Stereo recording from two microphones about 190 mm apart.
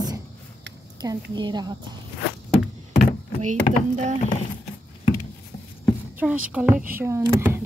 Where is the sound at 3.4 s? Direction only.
40° right (ahead or behind).